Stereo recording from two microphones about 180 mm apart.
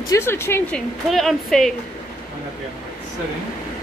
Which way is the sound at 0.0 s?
15° left (ahead or behind).